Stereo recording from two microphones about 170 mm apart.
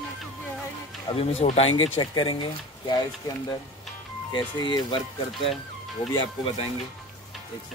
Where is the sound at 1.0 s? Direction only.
40° left (ahead or behind).